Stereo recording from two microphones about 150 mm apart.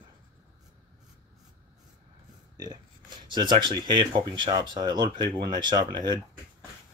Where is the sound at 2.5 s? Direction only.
25° right (ahead or behind).